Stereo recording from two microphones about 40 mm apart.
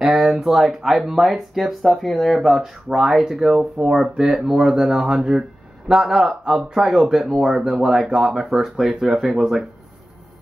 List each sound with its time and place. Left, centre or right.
0.0 s speech: centre